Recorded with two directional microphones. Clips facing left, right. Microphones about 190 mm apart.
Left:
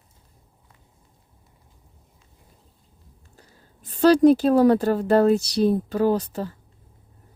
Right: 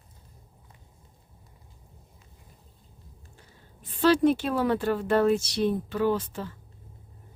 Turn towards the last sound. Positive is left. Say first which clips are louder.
# left 4 dB
turn(degrees=40)  # may be behind; listen again after turning